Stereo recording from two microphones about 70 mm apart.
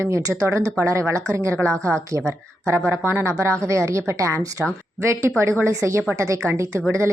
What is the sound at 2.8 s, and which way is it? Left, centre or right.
Speech, right.